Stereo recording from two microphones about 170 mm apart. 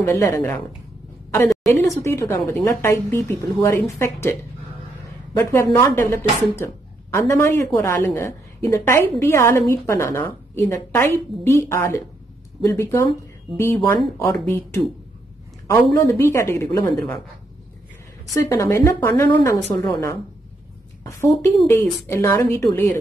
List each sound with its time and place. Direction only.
0.0 s a woman's voice: 15° left (ahead or behind)
1.8 s a woman's voice: 15° left (ahead or behind)
18.3 s a woman's voice: 15° left (ahead or behind)
21.0 s a woman's voice: 15° left (ahead or behind)